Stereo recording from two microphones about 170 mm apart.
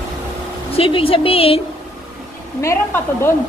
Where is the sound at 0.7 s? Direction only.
30° left (ahead or behind).